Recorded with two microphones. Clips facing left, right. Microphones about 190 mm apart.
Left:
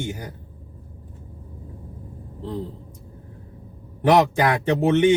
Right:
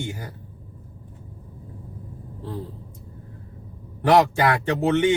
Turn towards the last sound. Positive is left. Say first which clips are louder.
# left 3 dB
turn(degrees=20)  # may be behind; listen again after turning